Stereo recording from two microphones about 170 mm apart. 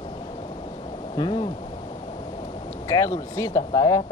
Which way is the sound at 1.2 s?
30° left (ahead or behind).